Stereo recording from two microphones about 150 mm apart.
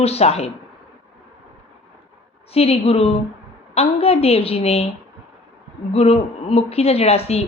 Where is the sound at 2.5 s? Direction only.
40° left (ahead or behind).